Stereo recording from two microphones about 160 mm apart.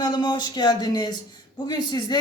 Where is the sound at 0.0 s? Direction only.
25° left (ahead or behind).